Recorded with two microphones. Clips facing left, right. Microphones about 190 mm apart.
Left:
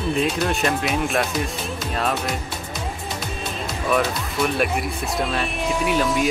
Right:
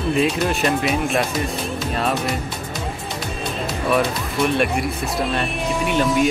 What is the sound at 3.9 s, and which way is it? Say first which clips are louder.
Speech: right 1 dB; centre (ahead or behind).